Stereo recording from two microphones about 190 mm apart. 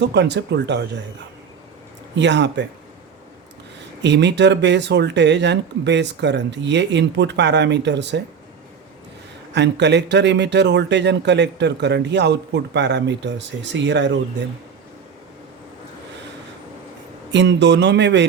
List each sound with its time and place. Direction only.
0.0 s a man's voice: 65° right (ahead or behind)
2.1 s speech: 65° right (ahead or behind)
4.0 s a man's voice: 65° right (ahead or behind)
9.5 s a man's voice: 65° right (ahead or behind)
17.3 s speech: 65° right (ahead or behind)